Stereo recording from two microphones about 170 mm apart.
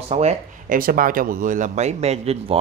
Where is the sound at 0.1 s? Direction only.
40° right (ahead or behind).